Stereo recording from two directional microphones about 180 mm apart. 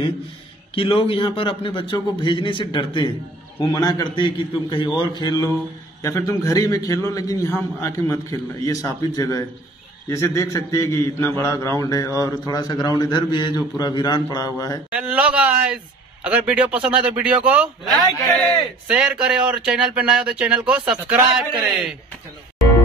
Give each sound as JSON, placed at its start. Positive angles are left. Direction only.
{"t": 0.7, "sound": "a man's voice", "side_deg": 30}
{"t": 14.9, "sound": "speech", "side_deg": -5}